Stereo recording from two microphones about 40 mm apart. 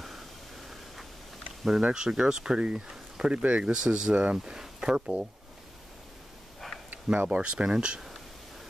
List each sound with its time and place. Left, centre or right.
1.8 s speech: right
7.2 s speech: right